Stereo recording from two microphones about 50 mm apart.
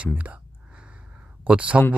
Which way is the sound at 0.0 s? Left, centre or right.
Right.